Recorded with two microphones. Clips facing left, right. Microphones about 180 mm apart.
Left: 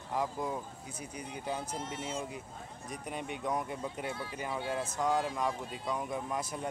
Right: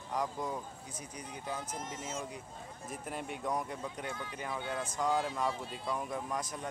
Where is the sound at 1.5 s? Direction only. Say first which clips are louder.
Left 3 dB; 30° left (ahead or behind).